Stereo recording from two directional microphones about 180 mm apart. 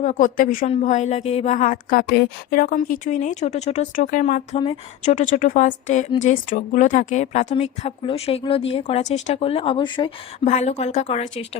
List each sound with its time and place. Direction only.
0.0 s a woman's voice: 45° left (ahead or behind)
0.7 s a woman's voice: 40° left (ahead or behind)
4.5 s speech: 30° left (ahead or behind)
5.1 s a woman's voice: 45° left (ahead or behind); by 10.1 s 25° left (ahead or behind)
10.4 s speech: 40° left (ahead or behind)